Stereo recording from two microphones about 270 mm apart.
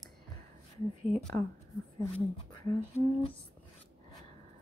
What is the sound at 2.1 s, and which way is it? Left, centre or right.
Speech, centre.